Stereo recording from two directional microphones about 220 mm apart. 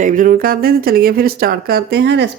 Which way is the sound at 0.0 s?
40° right (ahead or behind).